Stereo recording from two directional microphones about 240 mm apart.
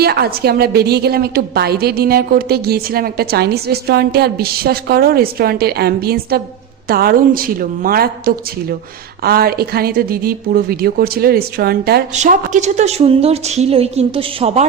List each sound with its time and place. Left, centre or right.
0.0 s a woman's voice: right